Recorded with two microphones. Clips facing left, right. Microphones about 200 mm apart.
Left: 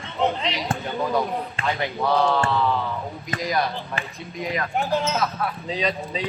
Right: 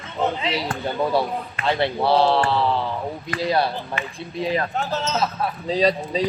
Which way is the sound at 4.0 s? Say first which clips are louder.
Right 2 dB; 35° left (ahead or behind).